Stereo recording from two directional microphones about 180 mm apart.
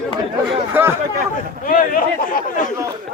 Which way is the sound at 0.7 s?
10° right (ahead or behind).